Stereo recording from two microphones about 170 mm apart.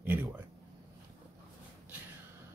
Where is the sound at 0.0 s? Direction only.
10° right (ahead or behind).